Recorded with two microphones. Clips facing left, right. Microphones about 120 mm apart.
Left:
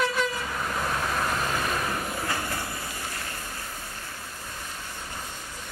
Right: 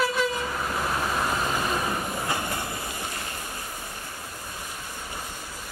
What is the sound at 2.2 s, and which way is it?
Train, 20° right (ahead or behind).